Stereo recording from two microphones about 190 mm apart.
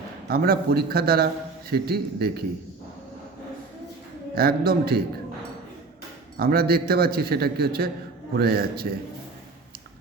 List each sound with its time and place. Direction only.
0.3 s a man's voice: 50° right (ahead or behind)
4.4 s a man's voice: 55° right (ahead or behind)
6.3 s a man's voice: 50° right (ahead or behind)